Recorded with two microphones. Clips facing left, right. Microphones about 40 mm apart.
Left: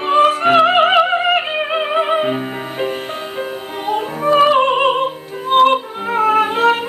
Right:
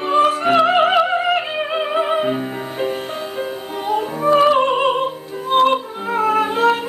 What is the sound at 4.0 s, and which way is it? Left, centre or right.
Music, centre.